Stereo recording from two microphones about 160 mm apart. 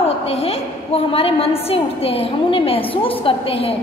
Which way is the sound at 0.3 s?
40° left (ahead or behind).